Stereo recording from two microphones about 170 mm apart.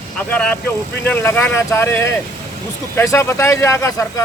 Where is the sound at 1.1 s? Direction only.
10° left (ahead or behind).